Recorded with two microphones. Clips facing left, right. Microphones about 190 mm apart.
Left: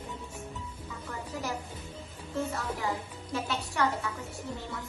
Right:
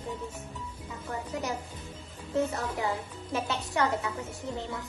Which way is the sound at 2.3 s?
20° right (ahead or behind).